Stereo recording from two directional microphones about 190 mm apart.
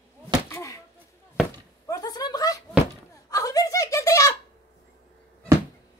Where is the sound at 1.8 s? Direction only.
20° left (ahead or behind).